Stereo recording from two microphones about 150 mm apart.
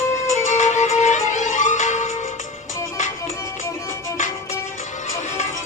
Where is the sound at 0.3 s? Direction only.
55° left (ahead or behind).